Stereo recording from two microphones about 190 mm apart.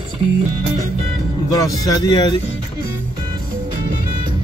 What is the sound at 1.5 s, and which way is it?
Speech, 20° left (ahead or behind).